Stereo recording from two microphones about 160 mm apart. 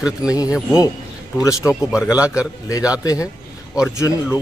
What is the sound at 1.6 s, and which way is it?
Speech, 5° right (ahead or behind).